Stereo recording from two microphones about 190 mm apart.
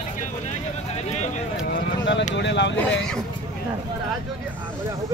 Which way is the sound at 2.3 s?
70° left (ahead or behind).